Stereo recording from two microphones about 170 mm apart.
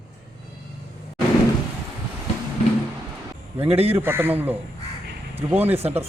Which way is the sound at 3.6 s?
35° right (ahead or behind).